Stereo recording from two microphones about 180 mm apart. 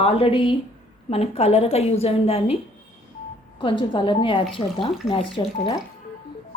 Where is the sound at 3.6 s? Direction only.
25° left (ahead or behind).